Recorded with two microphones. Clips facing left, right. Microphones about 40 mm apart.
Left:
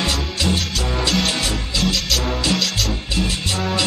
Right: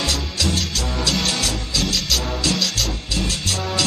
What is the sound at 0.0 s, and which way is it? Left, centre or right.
Music, left.